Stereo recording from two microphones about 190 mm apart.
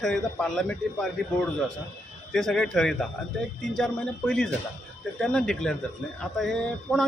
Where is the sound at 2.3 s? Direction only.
5° left (ahead or behind).